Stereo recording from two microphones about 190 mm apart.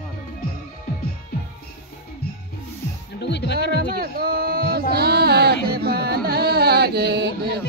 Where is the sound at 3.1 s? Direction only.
65° left (ahead or behind).